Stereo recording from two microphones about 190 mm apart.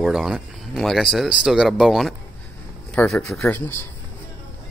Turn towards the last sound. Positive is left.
turn(degrees=10)  # may be behind; listen again after turning